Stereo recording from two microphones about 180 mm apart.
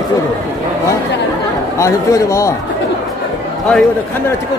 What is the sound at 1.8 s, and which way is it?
Speech, 15° left (ahead or behind).